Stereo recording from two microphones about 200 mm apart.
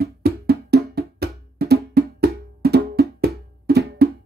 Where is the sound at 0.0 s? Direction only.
50° right (ahead or behind).